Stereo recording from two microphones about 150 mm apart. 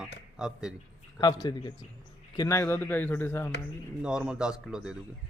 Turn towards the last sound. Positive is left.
turn(degrees=-5)  # may be behind; listen again after turning